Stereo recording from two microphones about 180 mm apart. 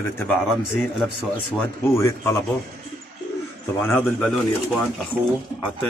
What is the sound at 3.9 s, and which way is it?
Speech, 5° left (ahead or behind).